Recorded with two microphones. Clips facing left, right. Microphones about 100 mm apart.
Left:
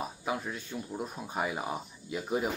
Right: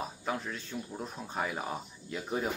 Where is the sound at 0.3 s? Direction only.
10° left (ahead or behind).